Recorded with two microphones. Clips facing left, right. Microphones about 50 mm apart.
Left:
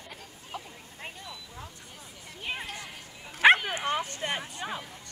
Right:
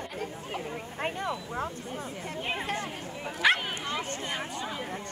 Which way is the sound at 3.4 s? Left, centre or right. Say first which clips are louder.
Left 5 dB; left.